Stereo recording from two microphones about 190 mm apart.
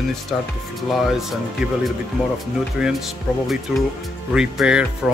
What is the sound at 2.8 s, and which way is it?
Speech, 5° right (ahead or behind).